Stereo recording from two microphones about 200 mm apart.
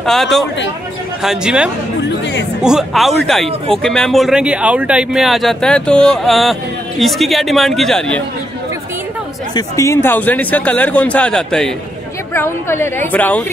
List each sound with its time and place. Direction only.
0.0 s speech: centre (ahead or behind)
2.0 s music: 60° left (ahead or behind)
2.6 s speech: centre (ahead or behind)
9.6 s a man's voice: 15° left (ahead or behind)